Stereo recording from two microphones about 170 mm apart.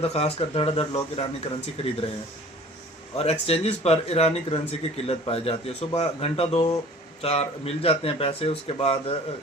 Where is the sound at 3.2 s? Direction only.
35° left (ahead or behind).